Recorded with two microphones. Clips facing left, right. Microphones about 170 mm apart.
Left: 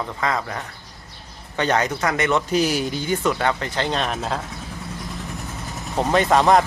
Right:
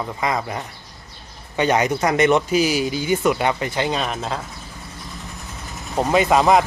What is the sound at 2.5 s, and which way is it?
Speech, 5° right (ahead or behind).